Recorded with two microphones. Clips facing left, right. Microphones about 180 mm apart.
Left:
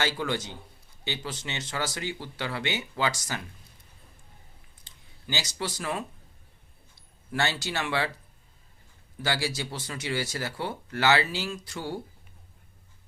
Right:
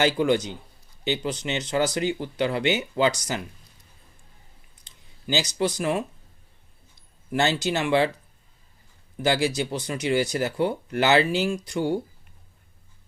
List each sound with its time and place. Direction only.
0.0 s speech: 15° right (ahead or behind)
4.8 s a sound: 15° right (ahead or behind)
7.3 s speech: 20° right (ahead or behind)
9.2 s speech: 20° right (ahead or behind)